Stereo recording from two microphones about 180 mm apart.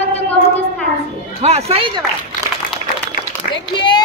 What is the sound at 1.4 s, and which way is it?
Speech, 35° right (ahead or behind).